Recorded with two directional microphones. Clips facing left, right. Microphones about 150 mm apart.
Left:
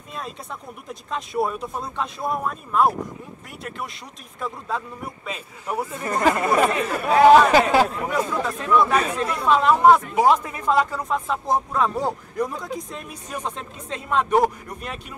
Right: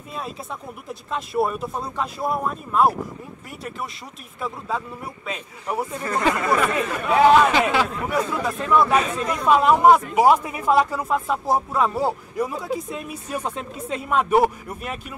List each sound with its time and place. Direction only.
0.1 s speech: 5° right (ahead or behind)
4.4 s speech: centre (ahead or behind)
6.1 s speech: 40° left (ahead or behind)
8.3 s a man's voice: 10° right (ahead or behind)